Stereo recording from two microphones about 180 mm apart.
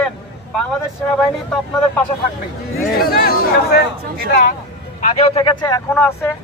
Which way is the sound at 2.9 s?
55° left (ahead or behind).